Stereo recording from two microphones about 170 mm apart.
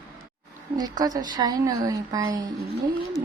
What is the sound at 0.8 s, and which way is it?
A woman's voice, 20° right (ahead or behind).